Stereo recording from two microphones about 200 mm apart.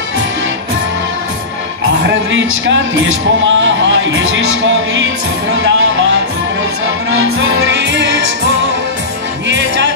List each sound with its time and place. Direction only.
2.0 s speech: 70° right (ahead or behind)
7.1 s music: 90° right; by 8.1 s 65° right (ahead or behind)